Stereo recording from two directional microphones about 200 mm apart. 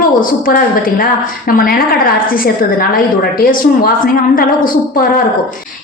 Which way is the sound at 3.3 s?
45° left (ahead or behind).